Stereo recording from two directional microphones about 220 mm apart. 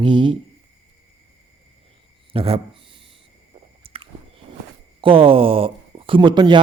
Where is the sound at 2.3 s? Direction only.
25° right (ahead or behind).